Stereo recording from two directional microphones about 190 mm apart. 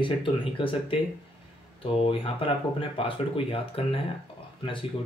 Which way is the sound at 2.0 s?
30° left (ahead or behind).